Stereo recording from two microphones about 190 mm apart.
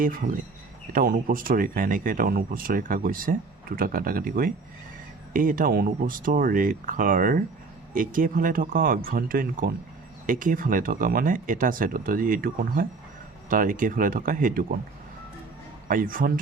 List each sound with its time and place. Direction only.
0.0 s speech: 45° right (ahead or behind)
15.9 s speech: 45° right (ahead or behind)